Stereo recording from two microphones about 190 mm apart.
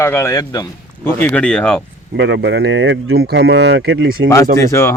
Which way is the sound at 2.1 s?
70° right (ahead or behind).